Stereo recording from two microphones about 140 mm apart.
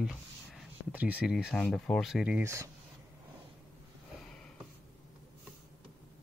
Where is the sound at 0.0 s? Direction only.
Centre (ahead or behind).